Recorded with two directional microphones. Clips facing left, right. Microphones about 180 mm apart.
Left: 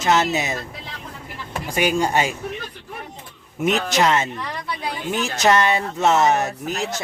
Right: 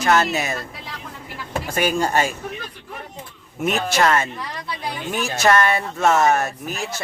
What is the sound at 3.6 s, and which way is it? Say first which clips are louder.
Speech: even; 20° left (ahead or behind).